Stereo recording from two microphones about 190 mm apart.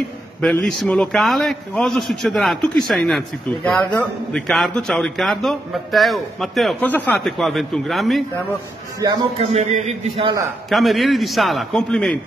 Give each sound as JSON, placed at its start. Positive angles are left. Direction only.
{"t": 0.4, "sound": "a man's voice", "side_deg": 5}
{"t": 9.0, "sound": "a man's voice", "side_deg": -25}
{"t": 10.7, "sound": "a man's voice", "side_deg": 0}